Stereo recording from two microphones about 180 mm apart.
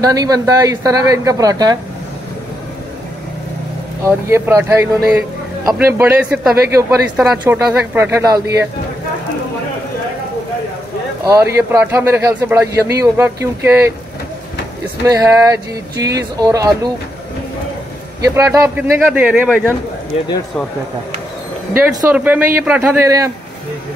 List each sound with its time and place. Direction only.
0.0 s speech: 20° right (ahead or behind)
4.0 s a man's voice: 15° right (ahead or behind)
11.2 s a man's voice: 15° right (ahead or behind)
15.0 s speech: 20° right (ahead or behind)
18.2 s a man's voice: 15° right (ahead or behind)
21.7 s a man's voice: 10° right (ahead or behind)